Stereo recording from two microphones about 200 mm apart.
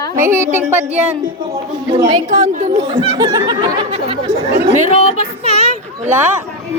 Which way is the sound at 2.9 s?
25° right (ahead or behind).